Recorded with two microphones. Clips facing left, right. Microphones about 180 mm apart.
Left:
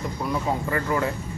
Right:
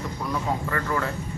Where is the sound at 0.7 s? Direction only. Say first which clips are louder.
Left 4 dB; 20° left (ahead or behind).